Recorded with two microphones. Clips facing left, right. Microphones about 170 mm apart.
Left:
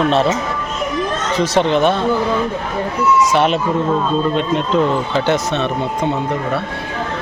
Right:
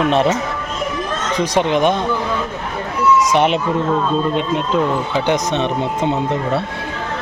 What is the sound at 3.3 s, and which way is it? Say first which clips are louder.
Speech: even; 20° right (ahead or behind).